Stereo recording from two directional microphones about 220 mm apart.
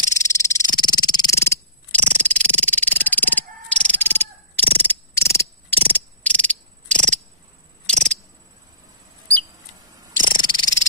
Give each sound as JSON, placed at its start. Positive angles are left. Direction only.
{"t": 0.1, "sound": "frog", "side_deg": 15}
{"t": 4.8, "sound": "cricket", "side_deg": 10}
{"t": 7.8, "sound": "a sound", "side_deg": 5}
{"t": 10.2, "sound": "frog", "side_deg": 20}